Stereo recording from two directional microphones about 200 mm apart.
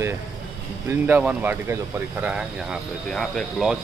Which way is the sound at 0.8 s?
10° right (ahead or behind).